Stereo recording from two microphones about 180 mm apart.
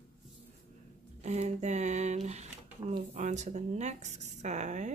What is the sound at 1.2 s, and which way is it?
Speech, 40° right (ahead or behind).